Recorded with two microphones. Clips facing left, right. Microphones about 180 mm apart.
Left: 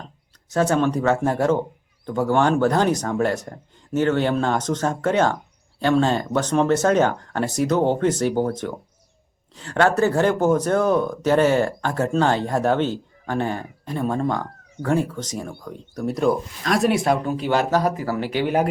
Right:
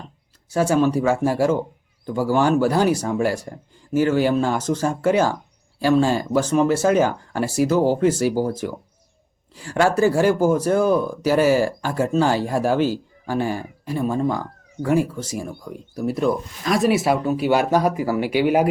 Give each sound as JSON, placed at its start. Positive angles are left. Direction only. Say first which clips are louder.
{"t": 0.5, "sound": "speech", "louder": "right 1 dB", "side_deg": -10}
{"t": 2.0, "sound": "speech", "louder": "even", "side_deg": -30}
{"t": 2.3, "sound": "speech", "louder": "right 1 dB", "side_deg": -5}
{"t": 9.6, "sound": "speech", "louder": "even", "side_deg": -10}